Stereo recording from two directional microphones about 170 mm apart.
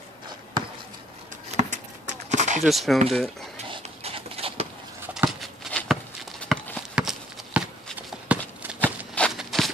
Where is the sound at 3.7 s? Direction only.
35° right (ahead or behind).